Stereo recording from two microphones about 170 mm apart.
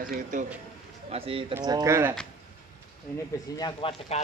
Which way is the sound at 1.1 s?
35° right (ahead or behind).